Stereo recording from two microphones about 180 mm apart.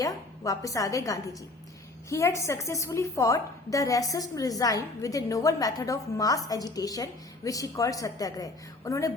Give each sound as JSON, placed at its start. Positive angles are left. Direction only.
{"t": 0.0, "sound": "a woman's voice", "side_deg": 20}